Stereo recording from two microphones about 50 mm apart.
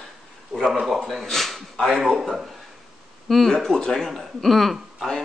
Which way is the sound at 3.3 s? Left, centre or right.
Centre.